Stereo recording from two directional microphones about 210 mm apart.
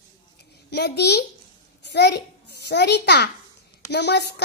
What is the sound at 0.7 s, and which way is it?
A child's voice, 50° left (ahead or behind).